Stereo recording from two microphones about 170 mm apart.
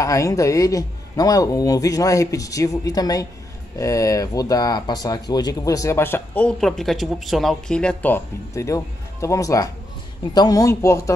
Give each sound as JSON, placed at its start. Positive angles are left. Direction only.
{"t": 0.0, "sound": "speech", "side_deg": 20}